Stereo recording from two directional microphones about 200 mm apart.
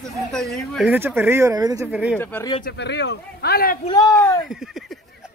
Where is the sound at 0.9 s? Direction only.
10° right (ahead or behind).